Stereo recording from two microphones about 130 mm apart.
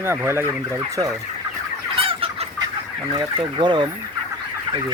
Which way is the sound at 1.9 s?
45° right (ahead or behind).